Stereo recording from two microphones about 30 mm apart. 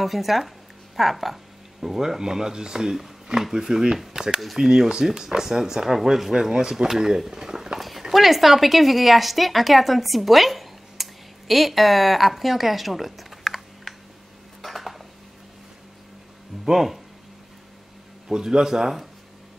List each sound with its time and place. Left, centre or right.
0.0 s speech: centre
6.5 s speech: right
8.1 s speech: centre
14.6 s dishes: centre
18.3 s speech: right